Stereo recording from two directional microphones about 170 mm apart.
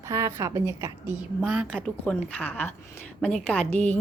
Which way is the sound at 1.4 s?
5° right (ahead or behind).